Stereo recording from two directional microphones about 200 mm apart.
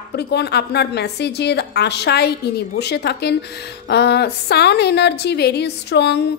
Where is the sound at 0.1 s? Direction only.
55° left (ahead or behind).